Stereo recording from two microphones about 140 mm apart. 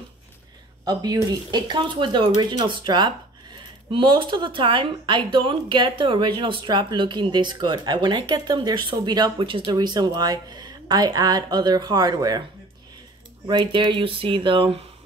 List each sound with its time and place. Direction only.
0.8 s speech: 30° right (ahead or behind)
13.5 s speech: 35° right (ahead or behind)